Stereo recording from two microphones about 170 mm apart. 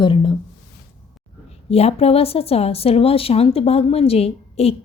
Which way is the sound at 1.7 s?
35° left (ahead or behind).